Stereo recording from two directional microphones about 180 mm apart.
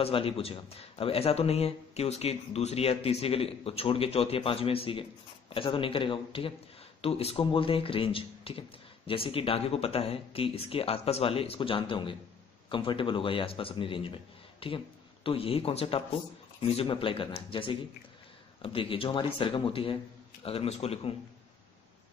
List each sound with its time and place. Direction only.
0.0 s speech: 30° left (ahead or behind)